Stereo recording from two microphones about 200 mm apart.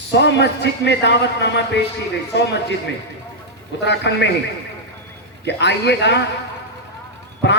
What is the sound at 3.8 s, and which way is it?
Speech, 60° left (ahead or behind).